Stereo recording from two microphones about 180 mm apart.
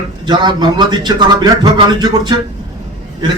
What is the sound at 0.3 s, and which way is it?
A man's voice, 25° right (ahead or behind).